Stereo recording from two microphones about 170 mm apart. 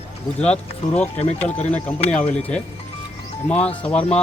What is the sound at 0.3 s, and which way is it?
Speech, 5° left (ahead or behind).